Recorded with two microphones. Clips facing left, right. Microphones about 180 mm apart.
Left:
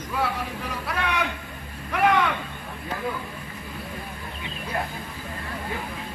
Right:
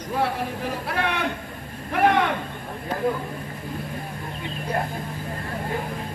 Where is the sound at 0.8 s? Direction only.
50° right (ahead or behind).